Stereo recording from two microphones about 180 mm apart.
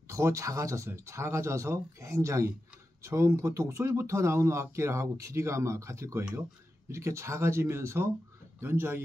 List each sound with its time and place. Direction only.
0.1 s speech: 15° right (ahead or behind)